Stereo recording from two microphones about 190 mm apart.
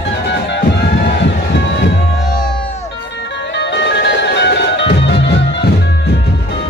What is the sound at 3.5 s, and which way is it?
Music, 65° left (ahead or behind).